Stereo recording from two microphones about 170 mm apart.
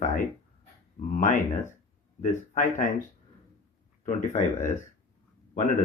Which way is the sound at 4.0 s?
45° left (ahead or behind).